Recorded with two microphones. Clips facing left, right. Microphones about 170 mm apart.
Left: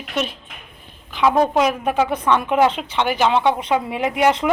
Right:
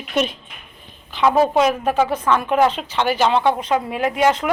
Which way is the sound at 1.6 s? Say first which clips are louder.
Right 1 dB; 10° left (ahead or behind).